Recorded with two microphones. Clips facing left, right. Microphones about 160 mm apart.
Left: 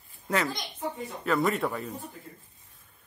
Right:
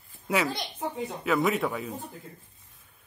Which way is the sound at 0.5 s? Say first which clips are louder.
Right 3 dB; 30° right (ahead or behind).